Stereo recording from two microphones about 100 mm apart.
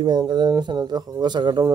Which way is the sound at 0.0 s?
50° right (ahead or behind).